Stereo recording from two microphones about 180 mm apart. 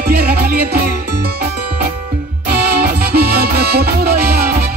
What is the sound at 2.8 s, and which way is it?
Music, 60° right (ahead or behind).